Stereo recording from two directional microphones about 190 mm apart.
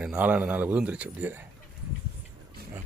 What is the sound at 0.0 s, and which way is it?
Speech, 5° right (ahead or behind).